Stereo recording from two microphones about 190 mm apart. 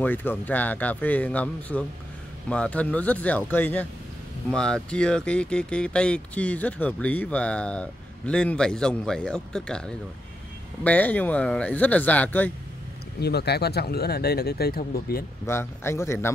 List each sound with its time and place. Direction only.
0.0 s speech: 10° left (ahead or behind)
13.2 s speech: 60° left (ahead or behind)
15.4 s speech: 15° left (ahead or behind)